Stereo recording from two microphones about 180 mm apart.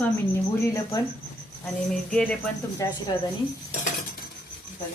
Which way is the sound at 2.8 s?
20° left (ahead or behind).